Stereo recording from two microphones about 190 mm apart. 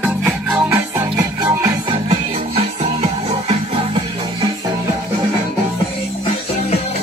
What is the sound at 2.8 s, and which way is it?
Music, 35° right (ahead or behind).